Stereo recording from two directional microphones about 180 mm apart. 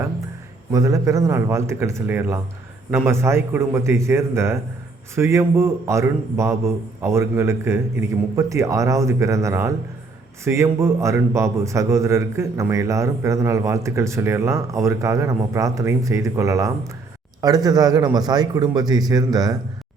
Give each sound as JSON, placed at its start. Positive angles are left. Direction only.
{"t": 0.7, "sound": "a man's voice", "side_deg": -20}